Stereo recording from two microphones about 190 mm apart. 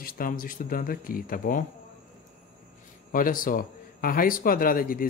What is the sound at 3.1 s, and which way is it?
A man's voice, 45° left (ahead or behind).